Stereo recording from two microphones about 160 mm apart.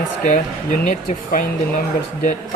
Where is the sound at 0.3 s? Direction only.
55° left (ahead or behind).